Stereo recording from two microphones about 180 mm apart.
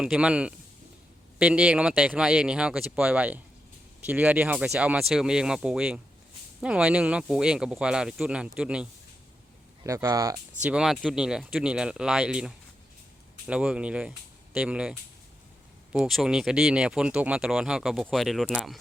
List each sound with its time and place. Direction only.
0.0 s speech: 5° right (ahead or behind)
9.8 s speech: 15° right (ahead or behind)
10.6 s speech: 5° right (ahead or behind)